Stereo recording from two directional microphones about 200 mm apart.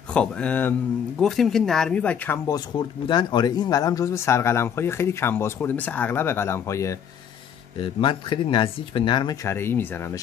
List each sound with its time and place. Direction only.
0.1 s speech: 5° left (ahead or behind)